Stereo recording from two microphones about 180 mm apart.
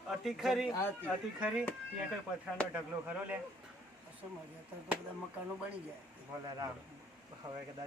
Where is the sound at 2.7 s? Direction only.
10° right (ahead or behind).